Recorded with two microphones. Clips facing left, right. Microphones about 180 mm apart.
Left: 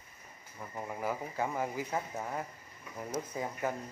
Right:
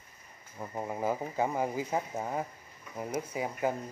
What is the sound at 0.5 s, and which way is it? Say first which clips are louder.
Speech: right 5 dB; 25° right (ahead or behind).